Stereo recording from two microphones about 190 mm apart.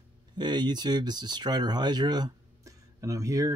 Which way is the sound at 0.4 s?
20° right (ahead or behind).